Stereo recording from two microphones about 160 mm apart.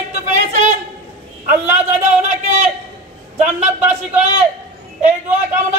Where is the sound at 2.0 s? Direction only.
50° right (ahead or behind).